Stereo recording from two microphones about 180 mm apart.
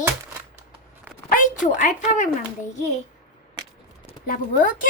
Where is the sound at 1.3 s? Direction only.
45° left (ahead or behind).